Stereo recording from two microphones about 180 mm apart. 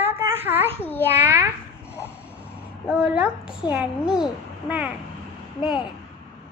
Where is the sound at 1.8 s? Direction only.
15° left (ahead or behind).